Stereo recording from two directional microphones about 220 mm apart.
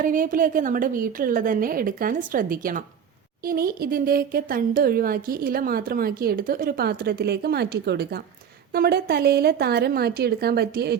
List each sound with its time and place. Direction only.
0.0 s a woman's voice: 35° right (ahead or behind)